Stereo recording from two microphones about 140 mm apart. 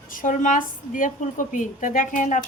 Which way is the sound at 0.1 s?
70° left (ahead or behind).